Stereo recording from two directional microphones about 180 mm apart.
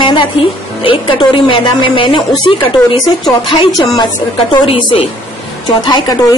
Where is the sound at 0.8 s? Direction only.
25° left (ahead or behind).